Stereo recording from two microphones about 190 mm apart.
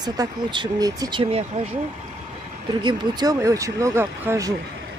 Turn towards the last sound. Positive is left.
turn(degrees=-15)  # may be behind; listen again after turning